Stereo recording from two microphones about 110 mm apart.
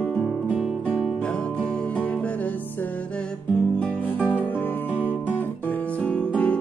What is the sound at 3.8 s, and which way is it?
Music, 15° left (ahead or behind).